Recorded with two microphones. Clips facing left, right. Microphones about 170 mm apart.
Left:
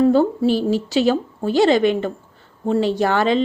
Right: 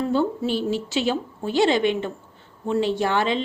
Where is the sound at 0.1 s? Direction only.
40° left (ahead or behind).